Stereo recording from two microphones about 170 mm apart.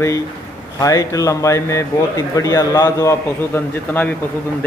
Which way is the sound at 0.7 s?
20° left (ahead or behind).